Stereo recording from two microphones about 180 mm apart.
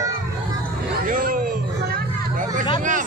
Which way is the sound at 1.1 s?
50° right (ahead or behind).